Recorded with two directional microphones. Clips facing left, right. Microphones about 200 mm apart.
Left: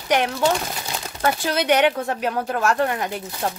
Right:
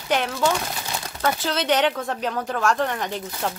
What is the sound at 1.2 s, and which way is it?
Speech, 10° left (ahead or behind).